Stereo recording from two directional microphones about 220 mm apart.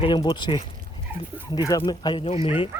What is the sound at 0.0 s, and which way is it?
Speech, 25° left (ahead or behind).